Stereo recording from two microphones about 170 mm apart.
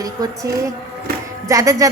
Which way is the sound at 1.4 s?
20° right (ahead or behind).